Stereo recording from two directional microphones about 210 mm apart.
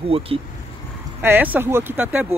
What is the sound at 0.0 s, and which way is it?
Speech, 25° right (ahead or behind).